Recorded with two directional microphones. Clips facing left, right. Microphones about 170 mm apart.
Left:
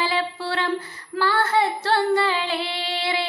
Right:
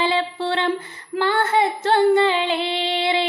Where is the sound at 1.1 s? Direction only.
20° right (ahead or behind).